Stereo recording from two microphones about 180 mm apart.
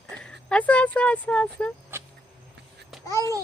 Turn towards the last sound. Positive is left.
turn(degrees=15)  # may be behind; listen again after turning